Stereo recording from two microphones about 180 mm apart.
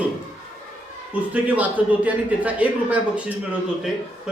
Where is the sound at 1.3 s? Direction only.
10° right (ahead or behind).